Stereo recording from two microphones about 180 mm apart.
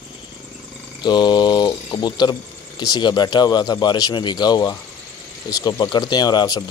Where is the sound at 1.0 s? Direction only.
25° left (ahead or behind).